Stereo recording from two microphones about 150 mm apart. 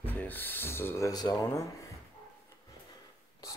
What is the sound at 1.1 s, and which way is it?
Speech, 25° left (ahead or behind).